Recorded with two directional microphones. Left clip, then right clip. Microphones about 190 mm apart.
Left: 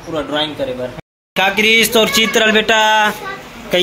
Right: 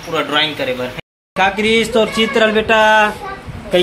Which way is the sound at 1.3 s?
15° left (ahead or behind).